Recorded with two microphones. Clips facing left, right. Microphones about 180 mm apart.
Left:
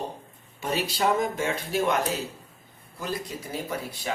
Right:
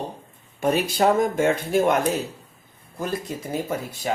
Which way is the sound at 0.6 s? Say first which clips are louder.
Right 6 dB; 50° right (ahead or behind).